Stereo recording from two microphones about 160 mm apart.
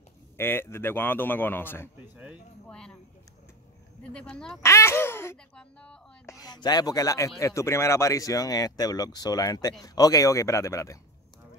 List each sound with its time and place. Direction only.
0.4 s a man's voice: 15° left (ahead or behind)
4.1 s speech: 5° left (ahead or behind)
4.6 s a man's voice: 15° left (ahead or behind)
6.2 s speech: 20° left (ahead or behind)